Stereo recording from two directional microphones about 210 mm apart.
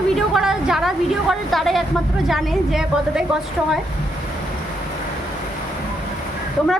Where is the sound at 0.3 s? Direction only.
Centre (ahead or behind).